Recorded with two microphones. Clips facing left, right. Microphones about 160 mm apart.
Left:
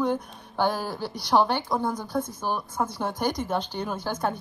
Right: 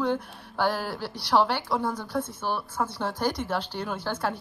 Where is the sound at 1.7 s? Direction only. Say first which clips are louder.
Left 1 dB; 20° left (ahead or behind).